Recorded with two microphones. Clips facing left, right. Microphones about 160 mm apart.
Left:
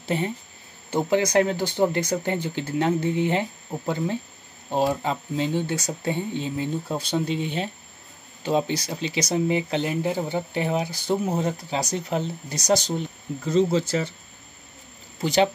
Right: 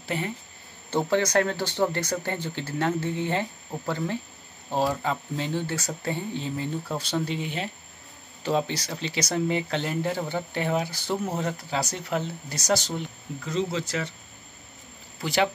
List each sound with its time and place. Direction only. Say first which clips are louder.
0.1 s speech: left 4 dB; 25° left (ahead or behind)
0.8 s speech: left 2 dB; 15° left (ahead or behind)
13.4 s speech: left 7 dB; 35° left (ahead or behind)
15.1 s speech: left 4 dB; 20° left (ahead or behind)